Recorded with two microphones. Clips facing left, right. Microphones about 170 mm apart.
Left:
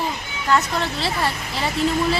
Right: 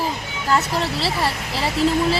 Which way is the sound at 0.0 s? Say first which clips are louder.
Right 1 dB; 35° right (ahead or behind).